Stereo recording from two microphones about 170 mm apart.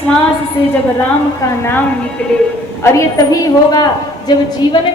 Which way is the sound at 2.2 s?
5° left (ahead or behind).